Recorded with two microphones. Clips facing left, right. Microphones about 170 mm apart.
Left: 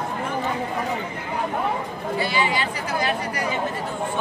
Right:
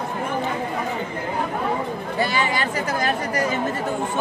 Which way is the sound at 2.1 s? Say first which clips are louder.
Right 1 dB; 45° right (ahead or behind).